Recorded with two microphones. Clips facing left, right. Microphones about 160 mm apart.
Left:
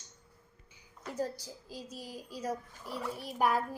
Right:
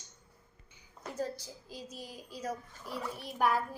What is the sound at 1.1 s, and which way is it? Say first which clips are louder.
A child's voice: left 1 dB; 5° left (ahead or behind).